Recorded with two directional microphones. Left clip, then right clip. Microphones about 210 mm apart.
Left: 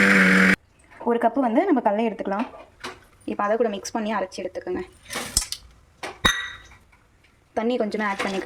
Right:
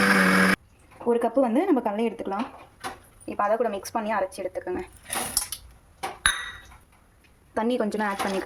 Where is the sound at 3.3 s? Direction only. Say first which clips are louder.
Left 1 dB; 15° left (ahead or behind).